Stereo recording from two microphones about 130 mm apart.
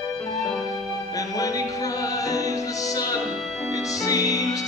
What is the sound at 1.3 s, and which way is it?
Music, 25° left (ahead or behind).